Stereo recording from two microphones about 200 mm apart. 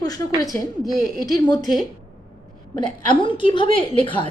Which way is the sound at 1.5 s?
20° left (ahead or behind).